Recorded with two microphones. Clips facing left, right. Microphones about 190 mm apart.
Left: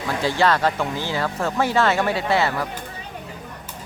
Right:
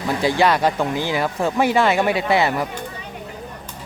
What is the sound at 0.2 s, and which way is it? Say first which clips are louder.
Speech: right 2 dB; 15° right (ahead or behind).